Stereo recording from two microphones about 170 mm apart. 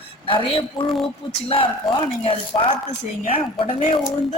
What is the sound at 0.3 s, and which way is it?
Speech, 30° left (ahead or behind).